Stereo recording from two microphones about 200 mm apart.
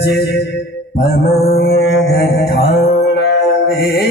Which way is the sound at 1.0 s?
55° left (ahead or behind).